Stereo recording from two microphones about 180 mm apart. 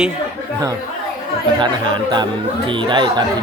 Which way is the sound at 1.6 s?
25° right (ahead or behind).